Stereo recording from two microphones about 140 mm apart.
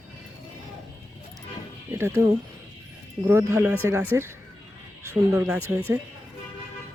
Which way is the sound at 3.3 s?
15° right (ahead or behind).